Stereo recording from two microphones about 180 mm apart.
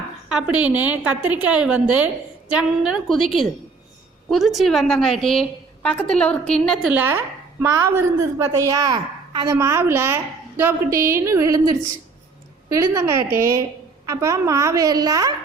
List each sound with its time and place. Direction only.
0.3 s a woman's voice: 5° right (ahead or behind)
6.8 s a woman's voice: 10° right (ahead or behind)